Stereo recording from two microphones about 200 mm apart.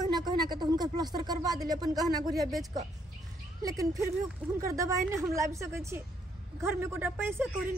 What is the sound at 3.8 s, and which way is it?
Speech, 15° right (ahead or behind).